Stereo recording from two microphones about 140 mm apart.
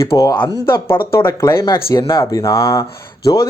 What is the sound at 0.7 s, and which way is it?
Speech, 15° left (ahead or behind).